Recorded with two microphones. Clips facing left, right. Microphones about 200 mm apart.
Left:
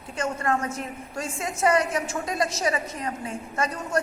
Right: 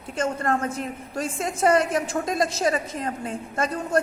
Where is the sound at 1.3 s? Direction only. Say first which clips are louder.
Right 2 dB; 55° right (ahead or behind).